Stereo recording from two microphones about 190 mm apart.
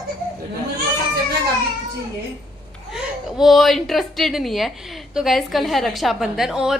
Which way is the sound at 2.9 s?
Centre (ahead or behind).